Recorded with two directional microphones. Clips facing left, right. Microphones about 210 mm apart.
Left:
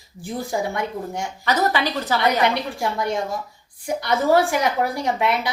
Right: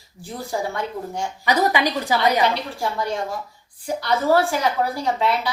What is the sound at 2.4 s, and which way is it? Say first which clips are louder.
Speech: left 1 dB; 15° left (ahead or behind).